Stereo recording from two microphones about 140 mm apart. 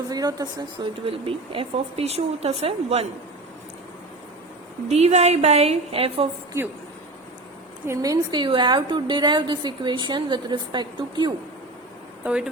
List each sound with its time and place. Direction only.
0.1 s a woman's voice: 30° right (ahead or behind)
1.0 s speech: 40° right (ahead or behind)
4.9 s speech: 50° right (ahead or behind)
7.9 s a woman's voice: 25° right (ahead or behind)
12.2 s speech: 5° right (ahead or behind)